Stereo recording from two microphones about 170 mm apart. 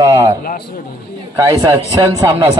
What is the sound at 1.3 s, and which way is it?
A man's voice, 20° right (ahead or behind).